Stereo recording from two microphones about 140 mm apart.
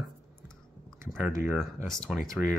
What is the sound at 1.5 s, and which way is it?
Speech, centre (ahead or behind).